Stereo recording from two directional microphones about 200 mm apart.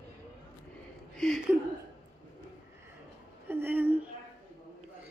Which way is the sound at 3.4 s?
10° right (ahead or behind).